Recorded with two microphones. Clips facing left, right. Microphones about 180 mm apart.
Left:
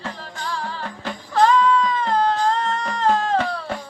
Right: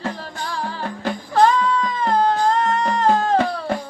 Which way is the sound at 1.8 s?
40° right (ahead or behind).